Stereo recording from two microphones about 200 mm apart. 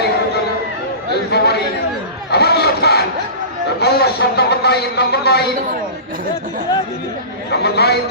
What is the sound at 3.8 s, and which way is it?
A man's voice, 55° left (ahead or behind).